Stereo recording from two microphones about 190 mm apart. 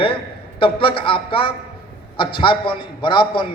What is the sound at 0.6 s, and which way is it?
A man's voice, 30° left (ahead or behind).